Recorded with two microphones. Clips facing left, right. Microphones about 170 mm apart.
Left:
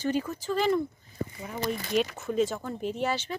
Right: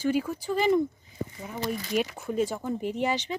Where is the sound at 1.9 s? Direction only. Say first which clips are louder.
Left 1 dB; 10° right (ahead or behind).